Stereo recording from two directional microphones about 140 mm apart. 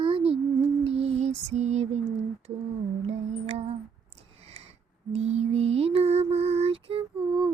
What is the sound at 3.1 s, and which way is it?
Lullaby, 50° right (ahead or behind).